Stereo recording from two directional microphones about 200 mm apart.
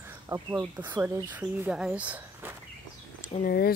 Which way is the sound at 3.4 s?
50° left (ahead or behind).